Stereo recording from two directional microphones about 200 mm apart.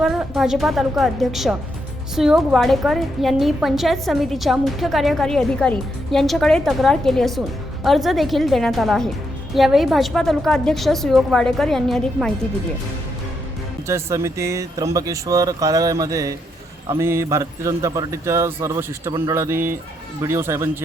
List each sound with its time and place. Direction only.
0.0 s a woman's voice: centre (ahead or behind)
13.8 s speech: 15° right (ahead or behind)